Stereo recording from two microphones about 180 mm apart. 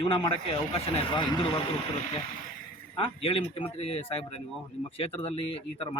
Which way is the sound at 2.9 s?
30° left (ahead or behind).